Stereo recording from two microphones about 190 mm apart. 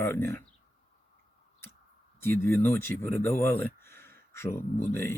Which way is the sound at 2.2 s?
10° left (ahead or behind).